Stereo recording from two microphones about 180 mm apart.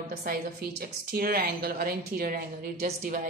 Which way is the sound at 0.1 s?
55° right (ahead or behind).